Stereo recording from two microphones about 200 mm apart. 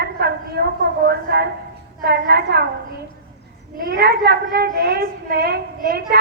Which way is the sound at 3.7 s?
45° right (ahead or behind).